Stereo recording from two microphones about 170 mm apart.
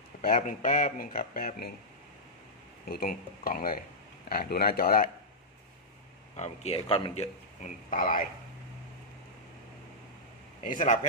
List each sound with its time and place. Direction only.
0.2 s speech: 50° left (ahead or behind)
2.9 s speech: 60° left (ahead or behind)
6.3 s speech: 40° left (ahead or behind)
10.6 s speech: 50° left (ahead or behind)